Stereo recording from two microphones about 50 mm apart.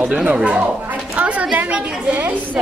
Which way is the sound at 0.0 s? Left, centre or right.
Right.